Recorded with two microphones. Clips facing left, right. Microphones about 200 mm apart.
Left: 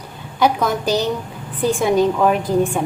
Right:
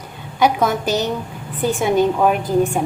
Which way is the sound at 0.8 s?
20° right (ahead or behind).